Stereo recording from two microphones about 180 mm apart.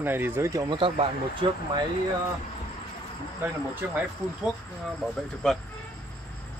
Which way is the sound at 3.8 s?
10° right (ahead or behind).